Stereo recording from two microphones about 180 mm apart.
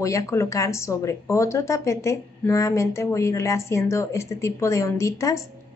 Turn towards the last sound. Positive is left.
turn(degrees=20)  # may be behind; listen again after turning